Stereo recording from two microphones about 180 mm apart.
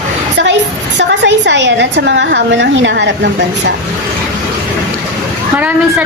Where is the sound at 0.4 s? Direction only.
85° right.